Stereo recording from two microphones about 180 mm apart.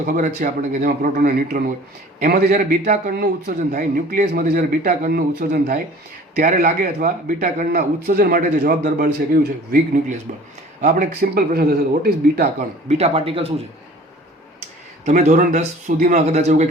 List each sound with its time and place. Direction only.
0.0 s a man's voice: 45° right (ahead or behind)
10.8 s a man's voice: 45° right (ahead or behind)
12.9 s speech: 35° right (ahead or behind)
15.0 s speech: 40° right (ahead or behind)